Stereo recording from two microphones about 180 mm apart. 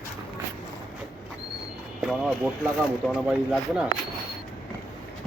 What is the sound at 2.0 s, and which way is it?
Speech, 5° right (ahead or behind).